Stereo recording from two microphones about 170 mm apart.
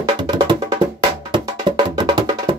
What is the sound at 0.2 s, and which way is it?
Music, 25° right (ahead or behind).